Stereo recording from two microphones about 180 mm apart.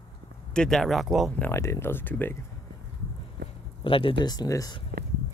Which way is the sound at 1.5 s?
15° left (ahead or behind).